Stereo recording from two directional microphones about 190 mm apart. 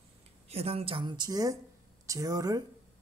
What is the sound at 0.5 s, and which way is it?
Speech, 30° right (ahead or behind).